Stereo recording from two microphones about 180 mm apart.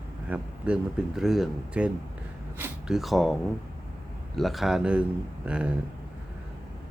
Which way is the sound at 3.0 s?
Centre (ahead or behind).